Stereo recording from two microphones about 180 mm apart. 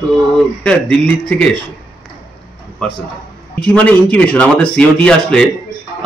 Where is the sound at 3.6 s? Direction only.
5° left (ahead or behind).